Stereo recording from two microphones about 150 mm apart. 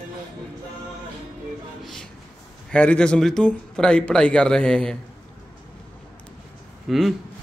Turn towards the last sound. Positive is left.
turn(degrees=0)  # may be behind; listen again after turning